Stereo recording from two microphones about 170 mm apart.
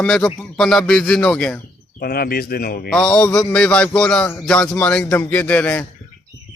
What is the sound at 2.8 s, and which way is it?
A man's voice, 5° left (ahead or behind).